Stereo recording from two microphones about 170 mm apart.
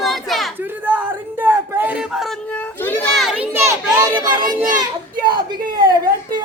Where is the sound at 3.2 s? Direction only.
Centre (ahead or behind).